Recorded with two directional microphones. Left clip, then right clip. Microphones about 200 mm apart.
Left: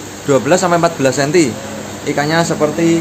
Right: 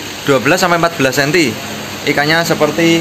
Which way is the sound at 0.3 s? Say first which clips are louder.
Right 1 dB; 5° right (ahead or behind).